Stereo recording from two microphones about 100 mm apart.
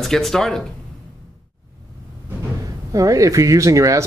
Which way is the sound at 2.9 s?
35° right (ahead or behind).